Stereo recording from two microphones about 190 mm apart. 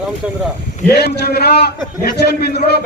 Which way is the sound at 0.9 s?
60° left (ahead or behind).